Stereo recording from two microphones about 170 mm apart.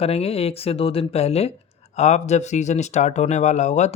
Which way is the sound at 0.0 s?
35° left (ahead or behind).